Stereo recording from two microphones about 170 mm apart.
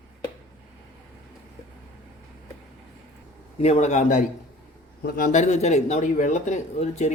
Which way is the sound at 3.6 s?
40° left (ahead or behind).